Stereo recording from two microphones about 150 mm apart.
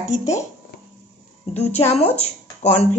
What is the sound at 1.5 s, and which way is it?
A woman's voice, 45° left (ahead or behind).